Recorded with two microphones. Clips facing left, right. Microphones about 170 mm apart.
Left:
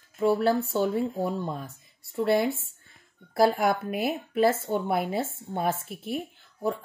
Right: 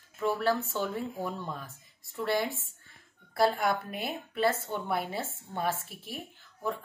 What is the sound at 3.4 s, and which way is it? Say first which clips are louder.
A woman's voice: left 4 dB; 50° left (ahead or behind).